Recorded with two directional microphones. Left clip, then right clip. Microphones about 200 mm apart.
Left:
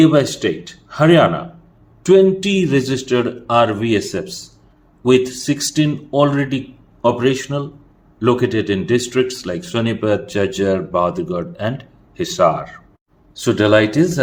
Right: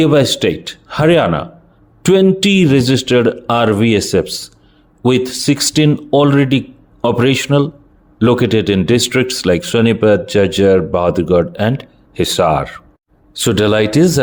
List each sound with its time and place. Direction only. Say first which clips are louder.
0.0 s speech: right 2 dB; 40° right (ahead or behind)